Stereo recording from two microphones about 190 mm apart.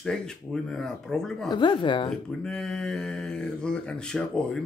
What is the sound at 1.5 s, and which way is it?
Speech, 25° left (ahead or behind).